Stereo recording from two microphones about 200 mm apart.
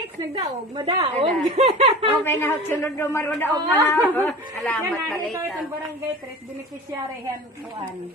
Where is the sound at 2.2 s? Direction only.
10° left (ahead or behind).